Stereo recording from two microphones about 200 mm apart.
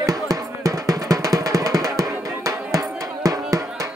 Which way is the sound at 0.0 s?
15° right (ahead or behind).